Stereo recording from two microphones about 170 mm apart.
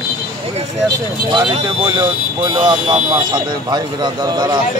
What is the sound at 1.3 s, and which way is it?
Speech, 25° right (ahead or behind).